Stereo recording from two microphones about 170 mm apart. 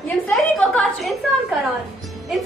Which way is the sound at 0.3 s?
5° left (ahead or behind).